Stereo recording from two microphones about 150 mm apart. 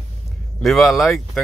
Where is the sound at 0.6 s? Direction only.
Centre (ahead or behind).